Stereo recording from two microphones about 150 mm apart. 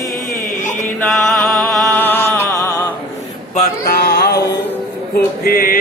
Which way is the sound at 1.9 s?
15° left (ahead or behind).